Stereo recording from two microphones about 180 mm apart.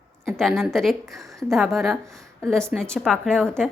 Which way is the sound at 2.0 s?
15° right (ahead or behind).